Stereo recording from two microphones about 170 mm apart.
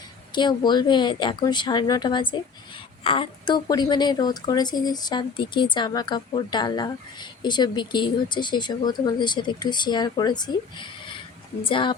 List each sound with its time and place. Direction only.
0.3 s a woman's voice: 25° left (ahead or behind)